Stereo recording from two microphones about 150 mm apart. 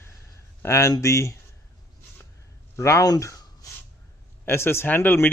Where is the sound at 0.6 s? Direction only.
20° left (ahead or behind).